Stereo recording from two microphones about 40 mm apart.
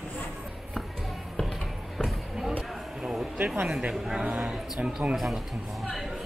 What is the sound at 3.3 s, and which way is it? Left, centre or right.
Speech, right.